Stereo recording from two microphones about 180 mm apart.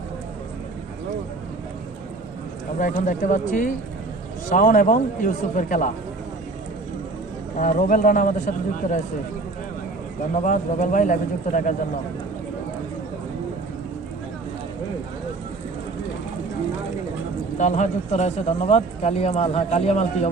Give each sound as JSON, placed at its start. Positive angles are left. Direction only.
{"t": 2.7, "sound": "a man's voice", "side_deg": 45}
{"t": 7.5, "sound": "a man's voice", "side_deg": 45}
{"t": 10.3, "sound": "a man's voice", "side_deg": 45}
{"t": 17.6, "sound": "speech", "side_deg": 40}